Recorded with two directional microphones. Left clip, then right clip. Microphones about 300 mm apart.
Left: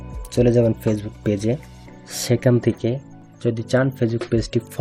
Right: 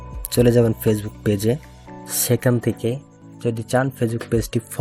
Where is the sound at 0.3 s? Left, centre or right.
Right.